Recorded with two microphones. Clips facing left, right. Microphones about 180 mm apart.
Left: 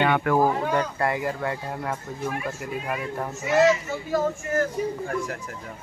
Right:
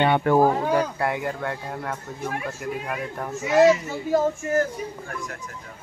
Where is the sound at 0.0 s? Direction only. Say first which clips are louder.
Right 2 dB; 30° right (ahead or behind).